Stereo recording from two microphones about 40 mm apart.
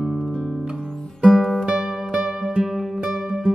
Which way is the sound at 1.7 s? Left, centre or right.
Centre.